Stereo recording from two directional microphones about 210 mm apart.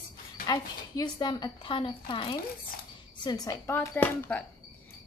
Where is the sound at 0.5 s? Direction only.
20° left (ahead or behind).